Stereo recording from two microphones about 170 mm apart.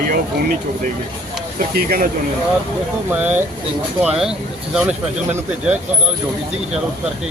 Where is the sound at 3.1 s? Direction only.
10° right (ahead or behind).